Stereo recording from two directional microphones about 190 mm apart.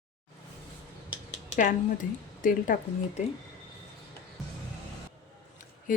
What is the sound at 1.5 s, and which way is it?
A woman's voice, 45° left (ahead or behind).